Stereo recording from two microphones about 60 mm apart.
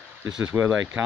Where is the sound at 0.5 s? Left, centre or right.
Right.